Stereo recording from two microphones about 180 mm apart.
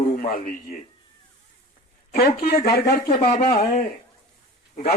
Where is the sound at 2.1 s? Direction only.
60° left (ahead or behind).